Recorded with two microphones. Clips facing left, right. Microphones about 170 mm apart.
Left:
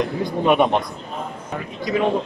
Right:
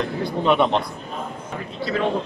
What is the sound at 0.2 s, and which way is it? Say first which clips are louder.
A man's voice: left 1 dB; 15° left (ahead or behind).